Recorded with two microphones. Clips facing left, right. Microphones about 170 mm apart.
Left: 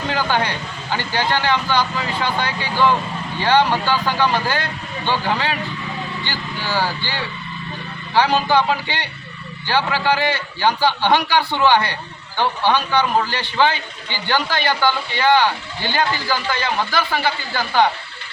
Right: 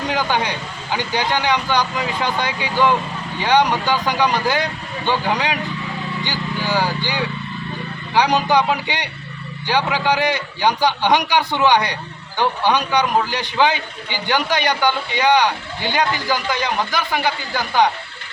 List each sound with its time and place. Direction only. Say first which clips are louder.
0.1 s speech: left 1 dB; 15° right (ahead or behind)